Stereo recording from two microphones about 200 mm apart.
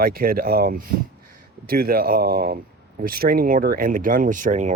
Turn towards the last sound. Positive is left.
turn(degrees=-35)  # may be behind; listen again after turning